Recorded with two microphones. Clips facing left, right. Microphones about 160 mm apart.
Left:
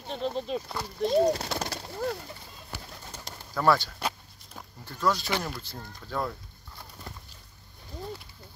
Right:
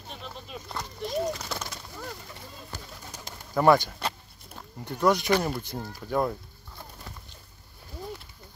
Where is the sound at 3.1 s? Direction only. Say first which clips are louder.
Right 6 dB; 15° right (ahead or behind).